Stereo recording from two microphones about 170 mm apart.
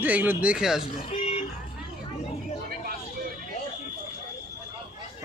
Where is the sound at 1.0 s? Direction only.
40° left (ahead or behind).